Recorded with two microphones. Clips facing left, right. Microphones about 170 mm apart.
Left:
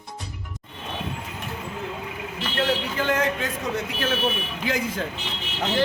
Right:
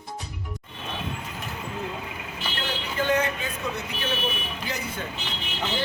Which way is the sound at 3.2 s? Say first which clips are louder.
Left 3 dB; 90° left.